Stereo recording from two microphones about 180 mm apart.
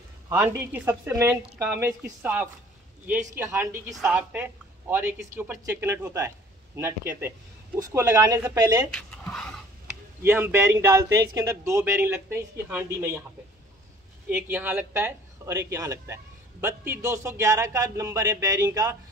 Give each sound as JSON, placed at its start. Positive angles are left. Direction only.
{"t": 0.3, "sound": "a woman's voice", "side_deg": -15}
{"t": 8.9, "sound": "a sound", "side_deg": 5}
{"t": 10.2, "sound": "speech", "side_deg": -10}
{"t": 14.3, "sound": "speech", "side_deg": -10}